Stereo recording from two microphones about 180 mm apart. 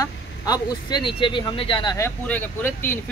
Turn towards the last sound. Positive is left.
turn(degrees=10)  # may be behind; listen again after turning